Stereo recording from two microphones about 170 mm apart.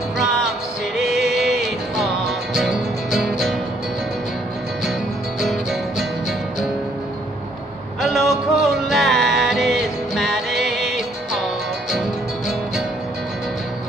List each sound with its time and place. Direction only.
0.9 s music: centre (ahead or behind)
5.4 s music: centre (ahead or behind)
8.0 s music: centre (ahead or behind)